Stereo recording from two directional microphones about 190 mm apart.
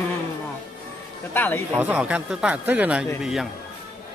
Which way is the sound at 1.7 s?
5° right (ahead or behind).